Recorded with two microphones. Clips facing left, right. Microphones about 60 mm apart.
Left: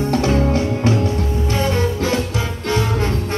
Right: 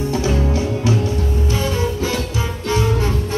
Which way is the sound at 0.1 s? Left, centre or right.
Left.